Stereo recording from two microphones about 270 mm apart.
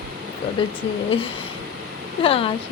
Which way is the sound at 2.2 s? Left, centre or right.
Centre.